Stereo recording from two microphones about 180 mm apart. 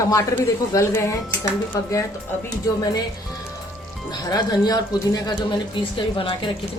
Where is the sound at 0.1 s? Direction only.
15° left (ahead or behind).